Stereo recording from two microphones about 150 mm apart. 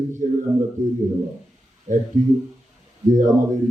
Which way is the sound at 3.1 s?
55° right (ahead or behind).